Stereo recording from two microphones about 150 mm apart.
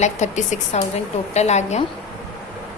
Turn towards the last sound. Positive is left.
turn(degrees=50)  # may be behind; listen again after turning